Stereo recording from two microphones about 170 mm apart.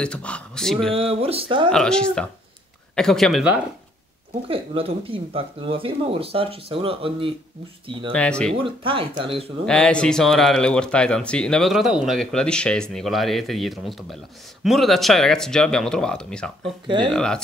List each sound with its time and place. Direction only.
0.0 s speech: 5° left (ahead or behind)
0.9 s speech: 35° right (ahead or behind)
1.7 s speech: 5° left (ahead or behind)
4.5 s speech: 35° right (ahead or behind)
8.1 s speech: 5° left (ahead or behind)
8.6 s speech: 30° right (ahead or behind)
9.7 s speech: 5° left (ahead or behind)
16.8 s speech: 30° right (ahead or behind)
17.1 s speech: 5° left (ahead or behind)